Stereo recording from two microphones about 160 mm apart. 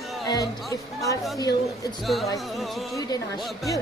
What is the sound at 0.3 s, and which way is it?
Speech, 20° left (ahead or behind).